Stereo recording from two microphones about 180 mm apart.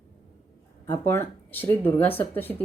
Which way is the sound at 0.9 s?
10° left (ahead or behind).